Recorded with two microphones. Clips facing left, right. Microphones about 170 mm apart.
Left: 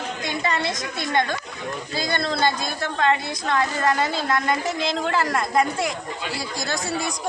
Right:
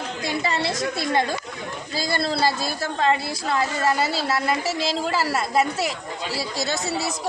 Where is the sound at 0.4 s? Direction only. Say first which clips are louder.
Even; 30° right (ahead or behind).